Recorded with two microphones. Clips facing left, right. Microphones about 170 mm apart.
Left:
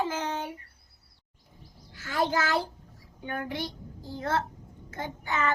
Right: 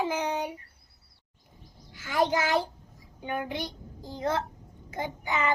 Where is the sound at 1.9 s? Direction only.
15° right (ahead or behind).